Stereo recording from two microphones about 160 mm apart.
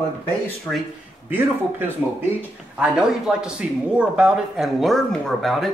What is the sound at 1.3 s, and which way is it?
Speech, 10° right (ahead or behind).